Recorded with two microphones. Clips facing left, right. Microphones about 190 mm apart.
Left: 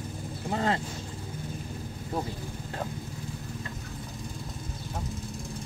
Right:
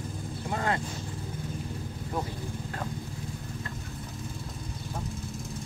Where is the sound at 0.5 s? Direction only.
25° left (ahead or behind).